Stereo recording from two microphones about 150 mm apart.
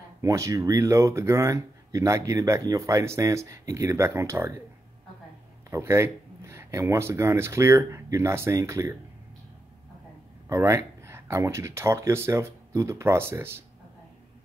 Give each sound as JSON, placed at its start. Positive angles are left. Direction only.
{"t": 0.2, "sound": "speech", "side_deg": -20}
{"t": 5.7, "sound": "speech", "side_deg": -15}
{"t": 10.5, "sound": "speech", "side_deg": -20}